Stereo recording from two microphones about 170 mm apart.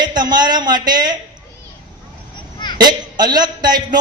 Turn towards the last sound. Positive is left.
turn(degrees=-25)  # may be behind; listen again after turning